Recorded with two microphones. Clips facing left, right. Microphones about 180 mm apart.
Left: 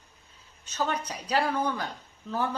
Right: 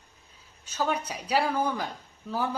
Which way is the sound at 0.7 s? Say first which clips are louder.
Right 1 dB; 10° right (ahead or behind).